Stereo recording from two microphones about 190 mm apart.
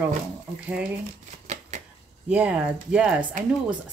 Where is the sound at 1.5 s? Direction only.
40° right (ahead or behind).